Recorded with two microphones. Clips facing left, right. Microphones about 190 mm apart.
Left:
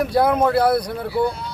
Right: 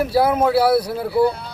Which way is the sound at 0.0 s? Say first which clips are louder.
Even; 5° right (ahead or behind).